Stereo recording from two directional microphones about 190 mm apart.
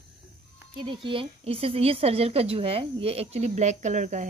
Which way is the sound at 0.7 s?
25° right (ahead or behind).